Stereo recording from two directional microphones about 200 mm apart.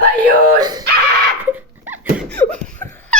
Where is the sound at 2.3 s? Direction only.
5° left (ahead or behind).